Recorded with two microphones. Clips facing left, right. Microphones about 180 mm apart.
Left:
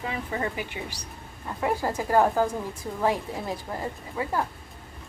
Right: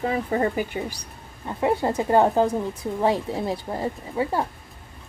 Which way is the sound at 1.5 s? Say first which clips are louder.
Right 4 dB; 25° right (ahead or behind).